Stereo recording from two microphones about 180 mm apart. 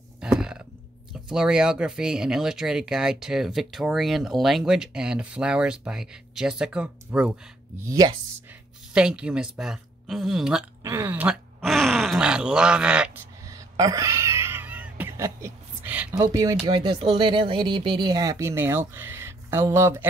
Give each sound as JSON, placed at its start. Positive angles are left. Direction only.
{"t": 0.4, "sound": "a sound", "side_deg": -5}
{"t": 1.1, "sound": "speech", "side_deg": -5}
{"t": 7.8, "sound": "speech", "side_deg": -20}
{"t": 8.9, "sound": "speech", "side_deg": -5}
{"t": 13.5, "sound": "cat", "side_deg": -20}
{"t": 16.2, "sound": "speech", "side_deg": -20}